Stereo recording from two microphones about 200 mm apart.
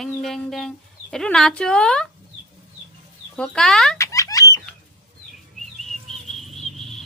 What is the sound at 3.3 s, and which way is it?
Speech, 5° left (ahead or behind).